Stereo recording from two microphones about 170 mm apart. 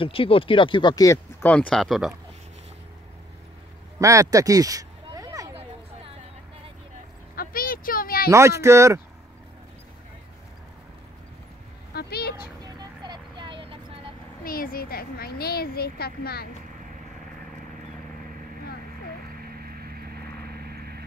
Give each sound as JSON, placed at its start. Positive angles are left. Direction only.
{"t": 0.0, "sound": "speech", "side_deg": 30}
{"t": 4.0, "sound": "speech", "side_deg": -20}
{"t": 5.1, "sound": "a sound", "side_deg": -20}
{"t": 7.3, "sound": "a sound", "side_deg": 55}
{"t": 8.3, "sound": "speech", "side_deg": -15}
{"t": 11.9, "sound": "vehicle", "side_deg": 70}
{"t": 12.6, "sound": "vehicle", "side_deg": -25}
{"t": 14.4, "sound": "a woman's voice", "side_deg": 55}
{"t": 19.4, "sound": "vehicle", "side_deg": -60}